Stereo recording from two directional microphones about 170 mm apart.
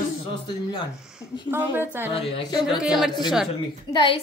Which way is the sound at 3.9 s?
25° left (ahead or behind).